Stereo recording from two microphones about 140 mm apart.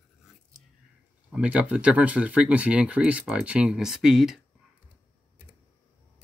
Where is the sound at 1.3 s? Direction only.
10° right (ahead or behind).